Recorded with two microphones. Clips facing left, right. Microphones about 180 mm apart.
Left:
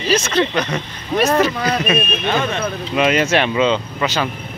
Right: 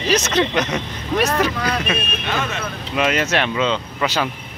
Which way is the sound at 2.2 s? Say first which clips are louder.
Left 3 dB; 30° left (ahead or behind).